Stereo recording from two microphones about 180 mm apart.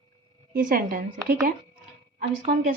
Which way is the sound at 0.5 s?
50° right (ahead or behind).